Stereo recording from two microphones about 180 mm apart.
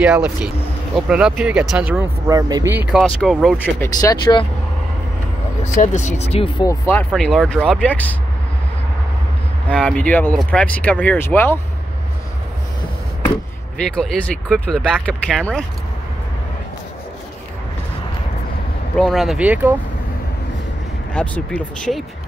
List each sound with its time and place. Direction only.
0.0 s speech: 5° right (ahead or behind)
3.0 s speech: centre (ahead or behind)
3.8 s speech: 20° left (ahead or behind)
5.6 s speech: 40° left (ahead or behind)
6.7 s speech: 10° left (ahead or behind)
7.1 s speech: centre (ahead or behind)
9.7 s speech: 5° left (ahead or behind)
13.7 s speech: 5° left (ahead or behind)
18.9 s speech: centre (ahead or behind)
21.1 s speech: 5° left (ahead or behind)